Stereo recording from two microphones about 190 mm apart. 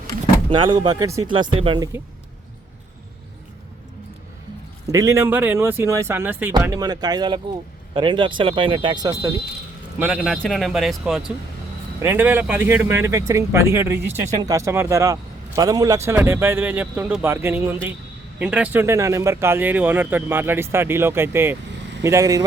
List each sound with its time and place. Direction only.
0.5 s speech: 25° right (ahead or behind)
4.9 s speech: 15° right (ahead or behind)
10.0 s speech: centre (ahead or behind); by 22.4 s 15° right (ahead or behind)